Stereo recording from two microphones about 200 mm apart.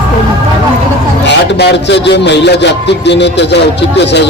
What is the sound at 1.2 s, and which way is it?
A man's voice, 55° left (ahead or behind).